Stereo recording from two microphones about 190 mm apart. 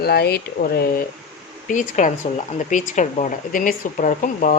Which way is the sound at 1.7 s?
40° left (ahead or behind).